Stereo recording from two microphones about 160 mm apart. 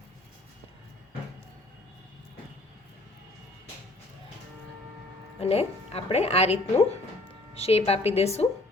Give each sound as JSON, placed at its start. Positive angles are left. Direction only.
{"t": 5.4, "sound": "speech", "side_deg": 40}